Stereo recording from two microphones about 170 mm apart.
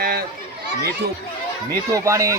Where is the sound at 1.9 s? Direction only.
20° right (ahead or behind).